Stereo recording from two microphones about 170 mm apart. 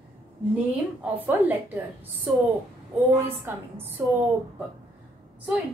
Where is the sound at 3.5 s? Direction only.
10° right (ahead or behind).